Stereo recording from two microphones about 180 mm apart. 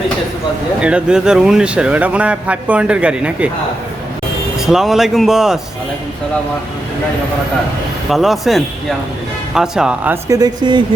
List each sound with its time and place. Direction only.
0.8 s a man's voice: 5° right (ahead or behind)
4.5 s speech: centre (ahead or behind)
8.1 s a man's voice: centre (ahead or behind); by 10.8 s 25° right (ahead or behind)